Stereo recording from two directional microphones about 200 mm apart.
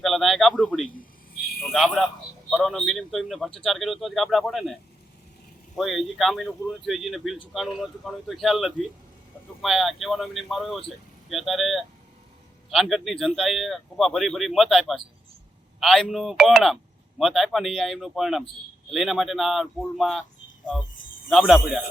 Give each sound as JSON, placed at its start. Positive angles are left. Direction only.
{"t": 0.0, "sound": "a man's voice", "side_deg": 0}
{"t": 0.9, "sound": "a sound", "side_deg": 50}
{"t": 1.7, "sound": "speech", "side_deg": 0}
{"t": 5.7, "sound": "speech", "side_deg": 0}
{"t": 21.2, "sound": "speech", "side_deg": 0}